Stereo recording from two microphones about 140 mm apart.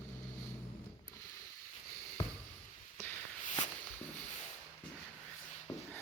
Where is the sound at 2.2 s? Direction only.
40° left (ahead or behind).